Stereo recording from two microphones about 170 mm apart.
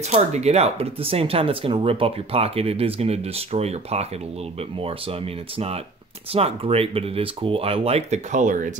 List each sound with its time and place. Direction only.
0.1 s speech: 40° right (ahead or behind)